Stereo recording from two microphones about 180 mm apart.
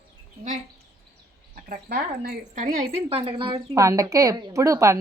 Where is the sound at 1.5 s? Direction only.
50° right (ahead or behind).